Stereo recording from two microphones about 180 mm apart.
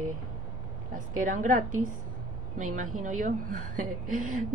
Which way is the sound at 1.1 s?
45° right (ahead or behind).